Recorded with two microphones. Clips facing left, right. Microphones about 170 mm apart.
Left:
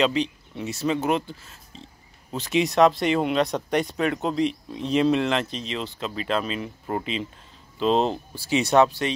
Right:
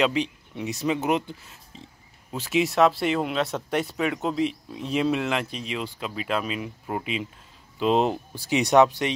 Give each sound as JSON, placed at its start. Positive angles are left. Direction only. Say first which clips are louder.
{"t": 0.0, "sound": "speech", "louder": "left 1 dB", "side_deg": -10}
{"t": 2.3, "sound": "speech", "louder": "left 1 dB", "side_deg": -5}